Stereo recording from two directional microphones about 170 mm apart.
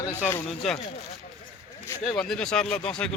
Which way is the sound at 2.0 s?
5° left (ahead or behind).